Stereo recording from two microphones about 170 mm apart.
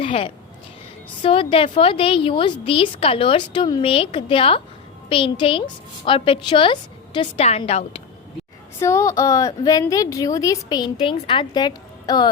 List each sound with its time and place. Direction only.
0.0 s a woman's voice: 35° left (ahead or behind)
8.8 s a woman's voice: 15° left (ahead or behind)